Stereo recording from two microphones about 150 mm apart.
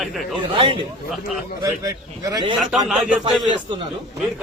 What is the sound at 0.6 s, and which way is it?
Speech, 35° right (ahead or behind).